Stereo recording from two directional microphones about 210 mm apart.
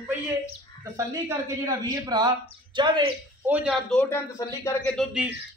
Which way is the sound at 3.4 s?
5° right (ahead or behind).